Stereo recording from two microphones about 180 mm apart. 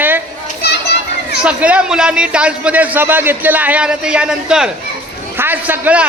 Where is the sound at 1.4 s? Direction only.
5° right (ahead or behind).